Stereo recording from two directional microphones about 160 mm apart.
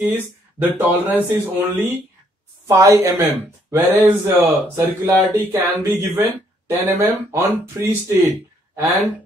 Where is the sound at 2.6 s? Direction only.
20° right (ahead or behind).